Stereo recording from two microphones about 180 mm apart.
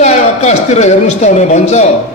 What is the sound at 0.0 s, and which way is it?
A man's voice, 40° left (ahead or behind).